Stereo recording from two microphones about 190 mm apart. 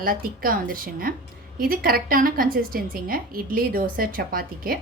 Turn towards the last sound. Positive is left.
turn(degrees=-50)  # may be behind; listen again after turning